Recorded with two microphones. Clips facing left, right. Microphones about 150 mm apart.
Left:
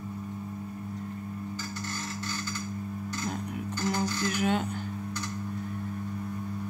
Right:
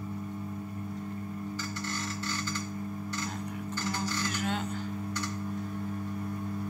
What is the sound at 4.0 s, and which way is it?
Music, 60° left (ahead or behind).